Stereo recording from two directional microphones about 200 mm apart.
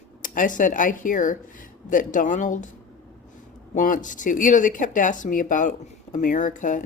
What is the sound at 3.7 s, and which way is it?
Speech, 40° left (ahead or behind).